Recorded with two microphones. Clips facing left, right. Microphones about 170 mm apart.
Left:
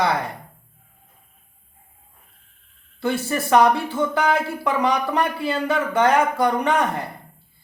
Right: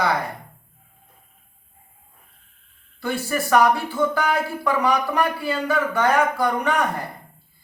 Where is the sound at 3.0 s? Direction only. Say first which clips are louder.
Left 2 dB; 20° left (ahead or behind).